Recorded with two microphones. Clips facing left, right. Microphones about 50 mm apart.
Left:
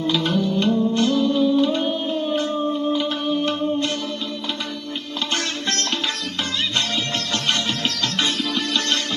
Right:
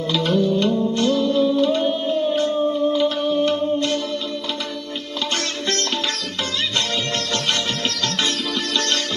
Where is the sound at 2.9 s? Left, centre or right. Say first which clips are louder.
Right 3 dB; left.